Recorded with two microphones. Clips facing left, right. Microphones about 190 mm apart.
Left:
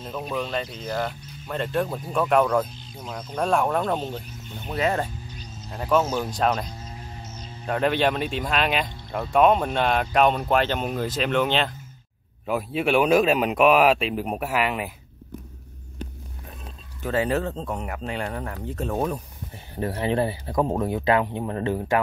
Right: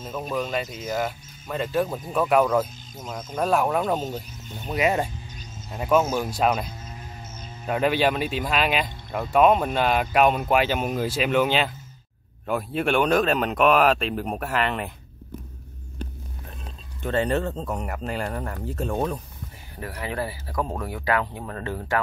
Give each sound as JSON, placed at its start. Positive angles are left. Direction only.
{"t": 0.0, "sound": "speech", "side_deg": 0}
{"t": 4.0, "sound": "speech", "side_deg": -40}
{"t": 4.7, "sound": "speech", "side_deg": -15}
{"t": 17.0, "sound": "speech", "side_deg": 5}
{"t": 19.7, "sound": "speech", "side_deg": 25}